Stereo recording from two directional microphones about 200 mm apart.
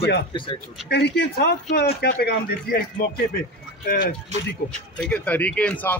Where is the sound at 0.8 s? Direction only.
55° left (ahead or behind).